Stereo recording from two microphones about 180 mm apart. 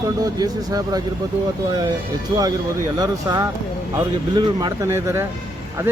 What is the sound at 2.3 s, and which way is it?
Speech, 25° right (ahead or behind).